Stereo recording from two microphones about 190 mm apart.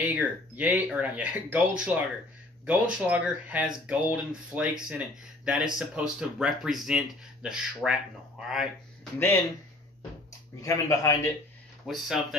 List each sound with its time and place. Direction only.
0.0 s speech: 5° right (ahead or behind)
10.6 s a man's voice: 15° left (ahead or behind)
11.8 s speech: centre (ahead or behind)